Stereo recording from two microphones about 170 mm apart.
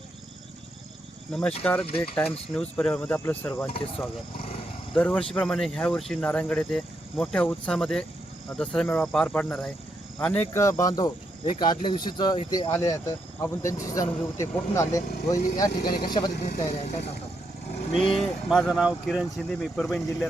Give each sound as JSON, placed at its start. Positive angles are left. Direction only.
{"t": 1.3, "sound": "speech", "side_deg": 5}
{"t": 4.9, "sound": "speech", "side_deg": 5}
{"t": 16.4, "sound": "speech", "side_deg": 40}
{"t": 18.1, "sound": "speech", "side_deg": 0}